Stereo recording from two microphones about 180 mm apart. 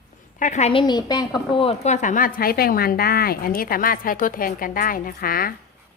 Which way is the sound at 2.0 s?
45° left (ahead or behind).